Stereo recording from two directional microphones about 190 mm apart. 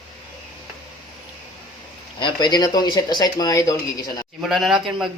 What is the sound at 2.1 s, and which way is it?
Speech, 25° left (ahead or behind).